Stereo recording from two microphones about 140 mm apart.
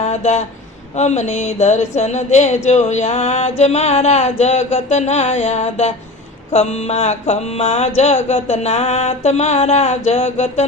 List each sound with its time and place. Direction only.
0.0 s speech: 55° left (ahead or behind)
0.9 s mantra: 55° left (ahead or behind)